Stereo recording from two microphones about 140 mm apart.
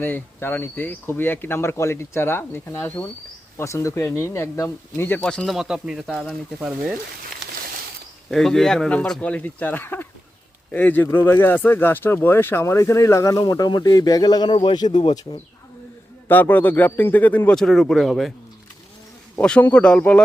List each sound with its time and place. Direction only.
0.0 s speech: 15° left (ahead or behind)
5.2 s speech: 5° left (ahead or behind)
8.3 s speech: 5° left (ahead or behind); by 15.4 s 30° left (ahead or behind)
16.3 s speech: 15° left (ahead or behind)
19.4 s speech: 10° left (ahead or behind)